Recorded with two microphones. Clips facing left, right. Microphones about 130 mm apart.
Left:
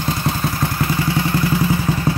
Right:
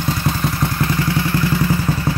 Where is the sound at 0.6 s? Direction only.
5° left (ahead or behind).